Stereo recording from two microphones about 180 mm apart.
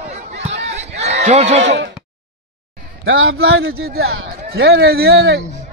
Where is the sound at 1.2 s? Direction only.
40° right (ahead or behind).